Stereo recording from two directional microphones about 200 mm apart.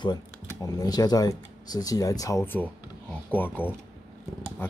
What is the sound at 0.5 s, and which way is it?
Speech, 15° left (ahead or behind).